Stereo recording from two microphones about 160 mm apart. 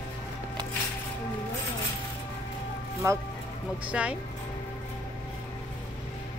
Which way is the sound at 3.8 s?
10° right (ahead or behind).